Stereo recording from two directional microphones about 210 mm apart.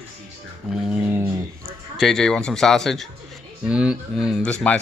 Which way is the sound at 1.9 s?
Centre (ahead or behind).